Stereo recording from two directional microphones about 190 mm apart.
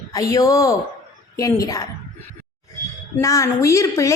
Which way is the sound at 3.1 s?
15° left (ahead or behind).